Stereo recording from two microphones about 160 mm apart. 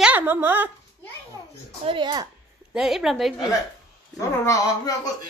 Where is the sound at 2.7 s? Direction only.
5° right (ahead or behind).